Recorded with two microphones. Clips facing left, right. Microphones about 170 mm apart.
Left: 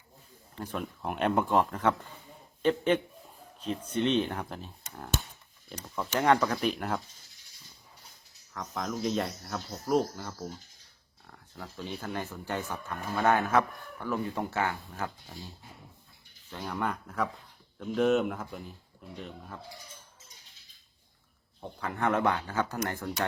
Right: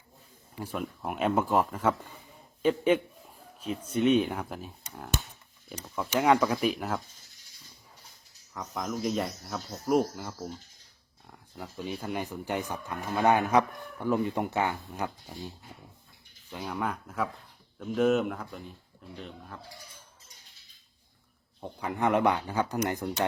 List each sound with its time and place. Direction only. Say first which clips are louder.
0.5 s a man's voice: right 1 dB; 10° right (ahead or behind)
8.5 s speech: right 1 dB; 5° right (ahead or behind)
21.6 s speech: right 2 dB; 15° right (ahead or behind)